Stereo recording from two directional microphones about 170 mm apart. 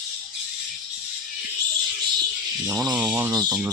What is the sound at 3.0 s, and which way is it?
Speech, 10° right (ahead or behind).